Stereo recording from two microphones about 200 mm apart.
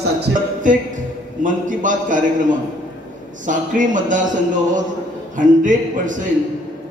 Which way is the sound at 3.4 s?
40° right (ahead or behind).